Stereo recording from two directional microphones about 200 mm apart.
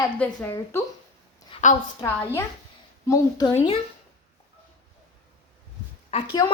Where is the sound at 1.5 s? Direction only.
40° left (ahead or behind).